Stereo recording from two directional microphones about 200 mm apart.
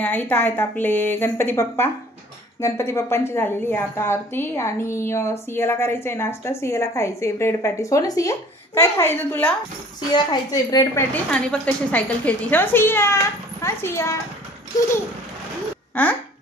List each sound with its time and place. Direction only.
0.0 s a woman's voice: 10° left (ahead or behind)
11.2 s a woman's voice: 5° left (ahead or behind)
15.9 s speech: 10° left (ahead or behind)